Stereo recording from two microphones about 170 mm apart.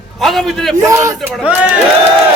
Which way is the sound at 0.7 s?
20° right (ahead or behind).